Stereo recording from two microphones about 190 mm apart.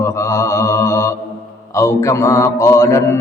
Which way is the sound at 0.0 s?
15° left (ahead or behind).